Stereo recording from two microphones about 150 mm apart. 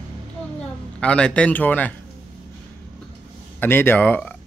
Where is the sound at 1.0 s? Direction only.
5° left (ahead or behind).